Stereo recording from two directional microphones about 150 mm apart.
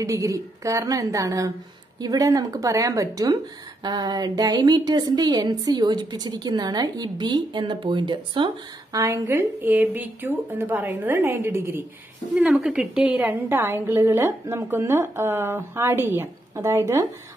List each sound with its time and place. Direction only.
0.0 s a woman's voice: 20° right (ahead or behind)
8.9 s a woman's voice: 20° right (ahead or behind)